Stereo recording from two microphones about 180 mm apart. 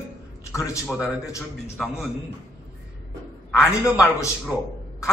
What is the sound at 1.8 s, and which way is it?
Speech, centre (ahead or behind).